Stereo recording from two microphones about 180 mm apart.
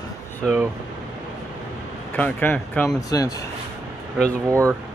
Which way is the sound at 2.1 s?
10° left (ahead or behind).